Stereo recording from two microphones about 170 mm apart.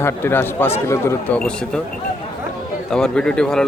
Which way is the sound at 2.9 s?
5° left (ahead or behind).